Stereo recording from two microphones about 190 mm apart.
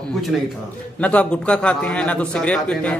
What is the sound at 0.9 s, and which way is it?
A man's voice, 5° left (ahead or behind).